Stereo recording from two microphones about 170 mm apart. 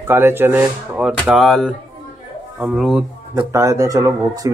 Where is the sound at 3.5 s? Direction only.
20° right (ahead or behind).